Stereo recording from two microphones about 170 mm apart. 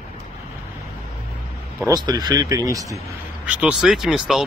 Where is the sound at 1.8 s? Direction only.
25° right (ahead or behind).